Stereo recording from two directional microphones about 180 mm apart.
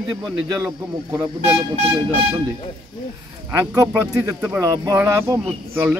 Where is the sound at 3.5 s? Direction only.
15° right (ahead or behind).